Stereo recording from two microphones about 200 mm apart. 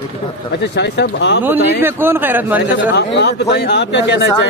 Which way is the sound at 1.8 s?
10° right (ahead or behind).